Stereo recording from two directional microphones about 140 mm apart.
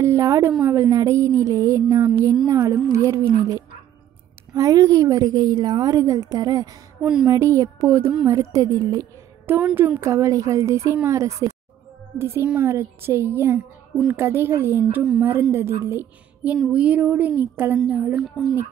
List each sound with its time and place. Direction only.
0.0 s a woman's voice: 20° right (ahead or behind)
7.0 s a woman's voice: 5° right (ahead or behind)
7.2 s a woman's voice: 20° right (ahead or behind)
18.2 s speech: centre (ahead or behind)